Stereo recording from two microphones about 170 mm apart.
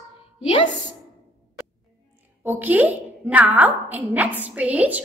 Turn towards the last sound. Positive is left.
turn(degrees=-10)  # may be behind; listen again after turning